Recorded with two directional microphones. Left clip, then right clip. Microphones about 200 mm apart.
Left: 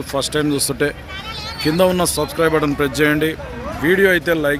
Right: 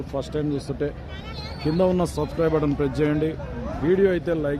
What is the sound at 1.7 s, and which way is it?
Speech, centre (ahead or behind).